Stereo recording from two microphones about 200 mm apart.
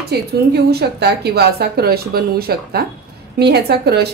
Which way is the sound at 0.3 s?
55° right (ahead or behind).